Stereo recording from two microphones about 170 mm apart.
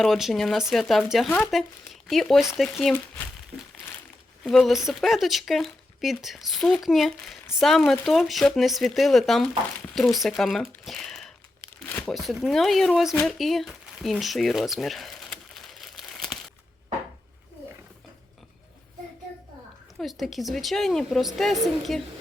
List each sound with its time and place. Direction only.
0.0 s speech: centre (ahead or behind)
4.4 s speech: centre (ahead or behind)
10.8 s a sound: centre (ahead or behind)
11.9 s crumpling: 10° left (ahead or behind)
12.1 s speech: centre (ahead or behind)
13.2 s a sound: centre (ahead or behind)
20.0 s speech: centre (ahead or behind)